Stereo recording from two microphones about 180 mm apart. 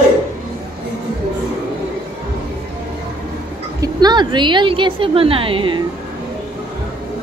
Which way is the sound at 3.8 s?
25° right (ahead or behind).